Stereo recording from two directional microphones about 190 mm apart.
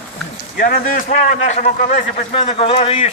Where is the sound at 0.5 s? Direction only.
50° left (ahead or behind); by 3.1 s 35° left (ahead or behind).